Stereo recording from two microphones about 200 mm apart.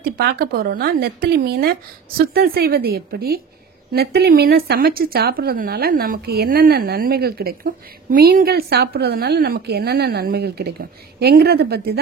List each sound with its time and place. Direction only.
0.2 s speech: 50° right (ahead or behind)